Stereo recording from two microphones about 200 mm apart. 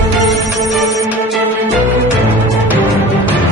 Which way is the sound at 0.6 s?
Centre (ahead or behind).